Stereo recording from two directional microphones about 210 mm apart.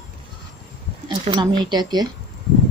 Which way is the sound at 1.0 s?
20° right (ahead or behind).